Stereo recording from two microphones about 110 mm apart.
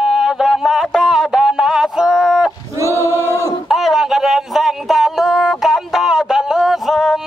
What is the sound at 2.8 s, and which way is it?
Choir, 25° right (ahead or behind).